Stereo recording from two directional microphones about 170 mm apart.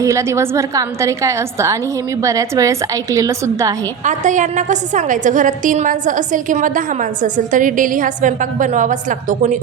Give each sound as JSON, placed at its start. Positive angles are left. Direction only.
{"t": 0.0, "sound": "a woman's voice", "side_deg": -15}
{"t": 4.0, "sound": "a woman's voice", "side_deg": -45}